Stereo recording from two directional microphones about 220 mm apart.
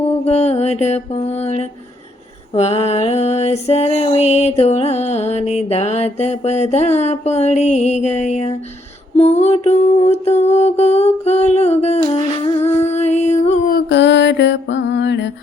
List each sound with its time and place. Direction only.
0.0 s mantra: 30° left (ahead or behind)
2.5 s a sound: 30° left (ahead or behind)
12.0 s music: 25° left (ahead or behind)
13.7 s mantra: 55° left (ahead or behind)